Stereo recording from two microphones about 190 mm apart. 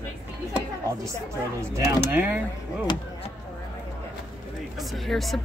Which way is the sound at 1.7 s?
10° right (ahead or behind).